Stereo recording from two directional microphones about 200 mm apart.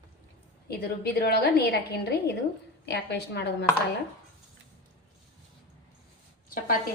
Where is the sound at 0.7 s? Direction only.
50° left (ahead or behind).